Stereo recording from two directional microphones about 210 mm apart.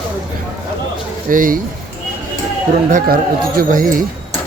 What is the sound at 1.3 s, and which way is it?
Speech, 40° right (ahead or behind).